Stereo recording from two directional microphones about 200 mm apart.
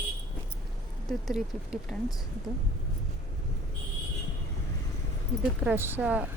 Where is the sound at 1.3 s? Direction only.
5° right (ahead or behind).